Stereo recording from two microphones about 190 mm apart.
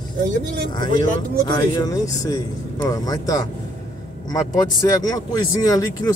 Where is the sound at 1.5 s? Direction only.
20° left (ahead or behind).